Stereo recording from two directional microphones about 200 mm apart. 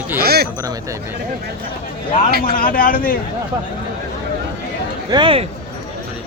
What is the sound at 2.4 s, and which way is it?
Speech, 45° left (ahead or behind).